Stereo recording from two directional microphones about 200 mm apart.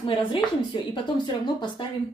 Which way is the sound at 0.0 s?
25° left (ahead or behind).